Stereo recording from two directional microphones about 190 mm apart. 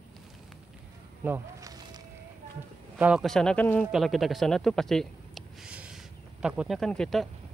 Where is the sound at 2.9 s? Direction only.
5° right (ahead or behind).